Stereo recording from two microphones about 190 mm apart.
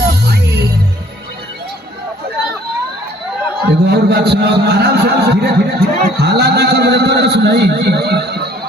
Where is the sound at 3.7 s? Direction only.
60° right (ahead or behind).